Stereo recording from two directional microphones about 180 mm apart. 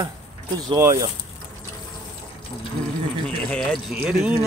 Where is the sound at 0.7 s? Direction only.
15° right (ahead or behind).